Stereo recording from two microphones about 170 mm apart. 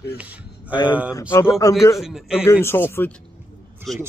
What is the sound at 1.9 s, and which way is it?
Speech, centre (ahead or behind).